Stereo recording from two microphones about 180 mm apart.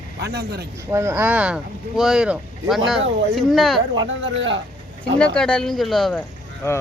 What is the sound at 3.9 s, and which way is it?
Speech, 90° right.